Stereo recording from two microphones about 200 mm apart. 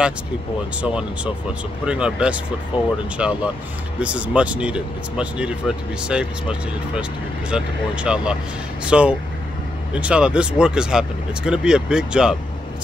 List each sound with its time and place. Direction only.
0.8 s speech: 5° right (ahead or behind)
2.7 s speech: 25° left (ahead or behind)
3.2 s speech: 5° right (ahead or behind)